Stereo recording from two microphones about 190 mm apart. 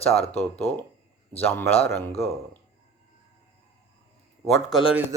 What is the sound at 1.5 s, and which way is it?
Speech, 10° left (ahead or behind).